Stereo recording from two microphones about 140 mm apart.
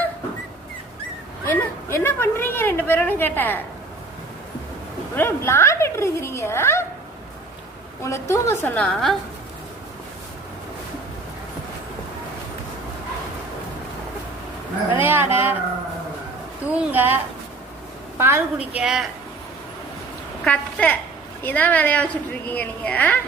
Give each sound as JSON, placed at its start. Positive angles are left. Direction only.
{"t": 1.5, "sound": "a sound", "side_deg": 15}
{"t": 5.1, "sound": "a woman's voice", "side_deg": 15}
{"t": 8.0, "sound": "a woman's voice", "side_deg": 20}
{"t": 14.9, "sound": "a woman's voice", "side_deg": -15}
{"t": 16.6, "sound": "a woman's voice", "side_deg": -15}
{"t": 18.2, "sound": "a woman's voice", "side_deg": -15}
{"t": 18.8, "sound": "speech", "side_deg": -5}
{"t": 20.4, "sound": "a woman's voice", "side_deg": 10}